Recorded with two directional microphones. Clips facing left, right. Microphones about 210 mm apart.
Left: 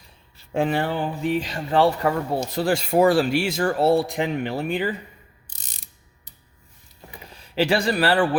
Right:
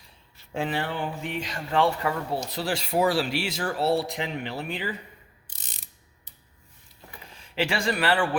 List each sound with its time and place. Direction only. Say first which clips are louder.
0.5 s speech: left 6 dB; 50° left (ahead or behind)
7.3 s a man's voice: left 7 dB; 40° left (ahead or behind)